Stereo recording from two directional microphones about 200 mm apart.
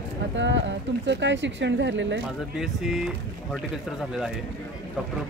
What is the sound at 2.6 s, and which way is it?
Speech, centre (ahead or behind).